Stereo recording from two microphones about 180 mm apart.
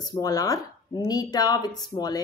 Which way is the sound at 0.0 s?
20° left (ahead or behind).